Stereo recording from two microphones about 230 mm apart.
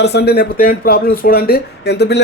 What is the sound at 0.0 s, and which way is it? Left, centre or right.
Speech, left.